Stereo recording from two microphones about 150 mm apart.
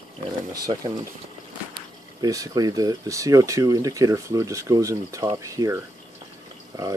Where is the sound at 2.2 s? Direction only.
25° right (ahead or behind).